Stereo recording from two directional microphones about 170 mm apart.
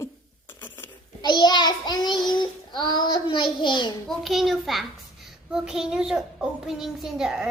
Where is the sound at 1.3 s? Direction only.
25° left (ahead or behind).